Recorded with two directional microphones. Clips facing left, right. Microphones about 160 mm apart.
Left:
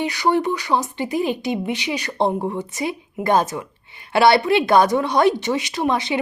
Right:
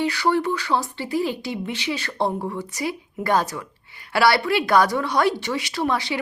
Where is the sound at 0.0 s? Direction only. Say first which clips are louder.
Left 2 dB; 15° left (ahead or behind).